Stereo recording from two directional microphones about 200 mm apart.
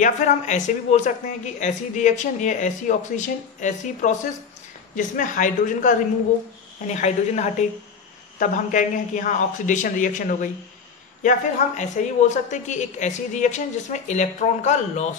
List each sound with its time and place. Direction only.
0.0 s speech: 40° left (ahead or behind)